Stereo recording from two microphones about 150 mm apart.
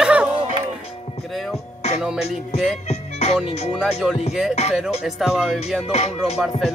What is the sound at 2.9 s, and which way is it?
Music, 45° left (ahead or behind).